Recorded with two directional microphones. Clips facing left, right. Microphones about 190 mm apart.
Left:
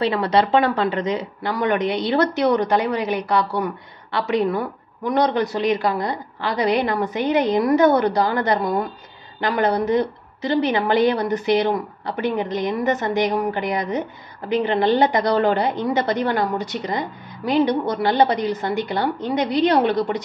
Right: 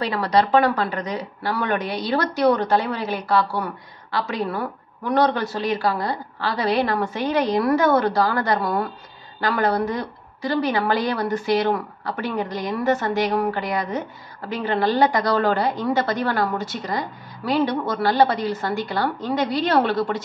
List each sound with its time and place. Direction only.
0.0 s a woman's voice: 25° left (ahead or behind)